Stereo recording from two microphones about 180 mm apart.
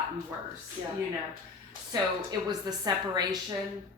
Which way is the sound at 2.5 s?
20° right (ahead or behind).